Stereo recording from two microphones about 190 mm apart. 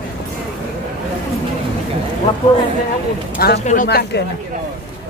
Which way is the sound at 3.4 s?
55° left (ahead or behind).